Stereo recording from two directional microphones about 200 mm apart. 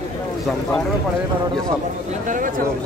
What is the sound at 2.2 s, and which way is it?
Speech, 40° right (ahead or behind).